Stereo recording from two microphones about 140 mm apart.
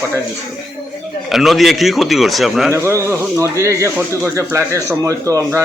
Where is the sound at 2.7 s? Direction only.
20° right (ahead or behind).